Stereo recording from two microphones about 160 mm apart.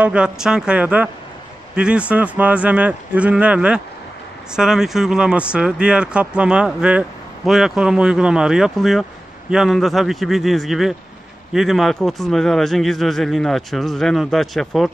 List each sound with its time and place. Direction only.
0.0 s speech: 5° right (ahead or behind)